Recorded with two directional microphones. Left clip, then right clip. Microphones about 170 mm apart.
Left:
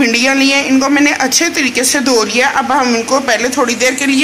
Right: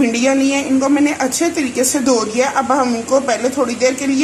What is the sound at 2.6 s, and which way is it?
Speech, 15° left (ahead or behind).